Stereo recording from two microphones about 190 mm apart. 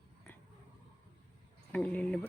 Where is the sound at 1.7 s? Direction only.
5° left (ahead or behind).